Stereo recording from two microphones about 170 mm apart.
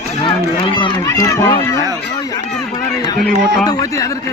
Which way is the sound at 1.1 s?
15° left (ahead or behind).